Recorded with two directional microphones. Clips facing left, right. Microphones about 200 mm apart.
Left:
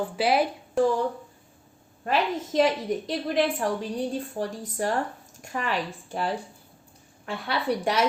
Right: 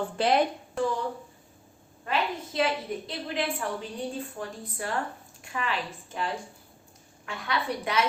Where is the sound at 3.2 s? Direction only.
45° left (ahead or behind).